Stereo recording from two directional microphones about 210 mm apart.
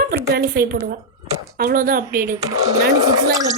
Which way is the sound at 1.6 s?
45° right (ahead or behind).